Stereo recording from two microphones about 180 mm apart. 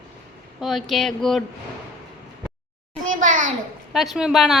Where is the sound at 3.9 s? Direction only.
Centre (ahead or behind).